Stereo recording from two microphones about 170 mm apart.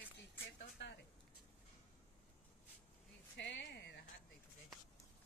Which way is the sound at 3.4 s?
90° left.